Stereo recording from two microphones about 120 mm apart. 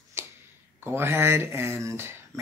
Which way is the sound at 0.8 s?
20° right (ahead or behind).